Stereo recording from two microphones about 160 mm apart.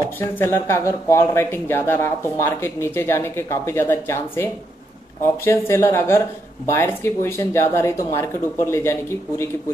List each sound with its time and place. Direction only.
0.2 s speech: 15° left (ahead or behind)